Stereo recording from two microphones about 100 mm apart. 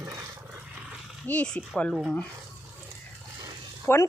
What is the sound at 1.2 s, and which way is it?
Speech, 15° left (ahead or behind).